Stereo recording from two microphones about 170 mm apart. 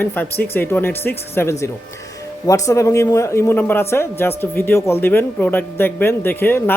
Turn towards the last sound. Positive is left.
turn(degrees=10)  # may be behind; listen again after turning